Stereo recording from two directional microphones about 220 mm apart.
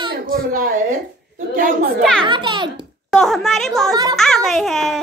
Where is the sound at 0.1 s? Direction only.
40° right (ahead or behind).